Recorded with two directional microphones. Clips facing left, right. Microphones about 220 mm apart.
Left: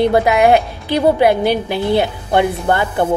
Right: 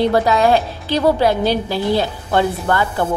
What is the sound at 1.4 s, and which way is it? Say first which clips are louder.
Speech: left 1 dB; 55° left (ahead or behind).